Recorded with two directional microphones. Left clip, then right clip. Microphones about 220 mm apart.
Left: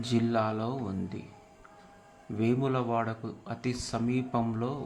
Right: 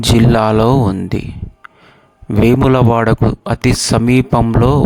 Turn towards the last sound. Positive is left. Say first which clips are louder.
# right 19 dB
turn(degrees=-50)  # may be behind; listen again after turning